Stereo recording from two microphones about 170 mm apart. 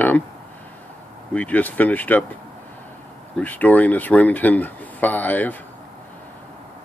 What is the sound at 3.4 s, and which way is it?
Speech, 10° left (ahead or behind).